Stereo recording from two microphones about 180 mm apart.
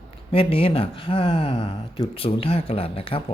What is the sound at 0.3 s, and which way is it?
Speech, 30° left (ahead or behind).